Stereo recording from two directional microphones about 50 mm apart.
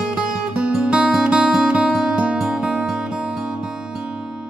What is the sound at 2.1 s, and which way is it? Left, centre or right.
Music, right.